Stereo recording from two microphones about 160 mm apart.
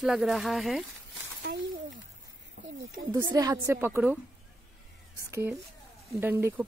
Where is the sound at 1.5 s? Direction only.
80° right.